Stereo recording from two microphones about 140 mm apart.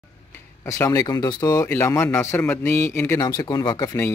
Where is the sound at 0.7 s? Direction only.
25° left (ahead or behind).